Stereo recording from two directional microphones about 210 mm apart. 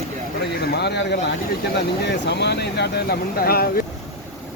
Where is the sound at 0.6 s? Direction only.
50° left (ahead or behind).